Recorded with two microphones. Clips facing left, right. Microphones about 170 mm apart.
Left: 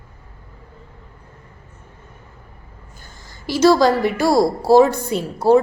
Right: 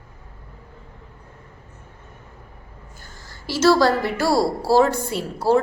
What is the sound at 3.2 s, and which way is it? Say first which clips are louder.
A woman's voice: left 3 dB; 15° left (ahead or behind).